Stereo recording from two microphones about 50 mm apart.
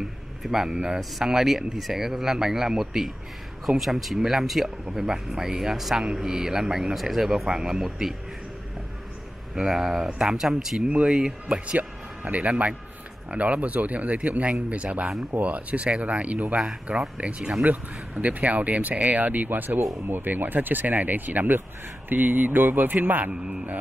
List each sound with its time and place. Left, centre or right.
0.4 s speech: centre
9.6 s speech: centre; by 16.6 s right
17.2 s speech: centre
17.6 s speech: right
23.3 s speech: centre